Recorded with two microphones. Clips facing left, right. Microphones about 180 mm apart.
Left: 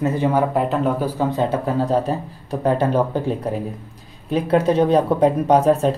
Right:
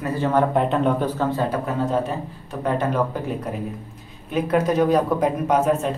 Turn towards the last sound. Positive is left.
turn(degrees=35)  # may be behind; listen again after turning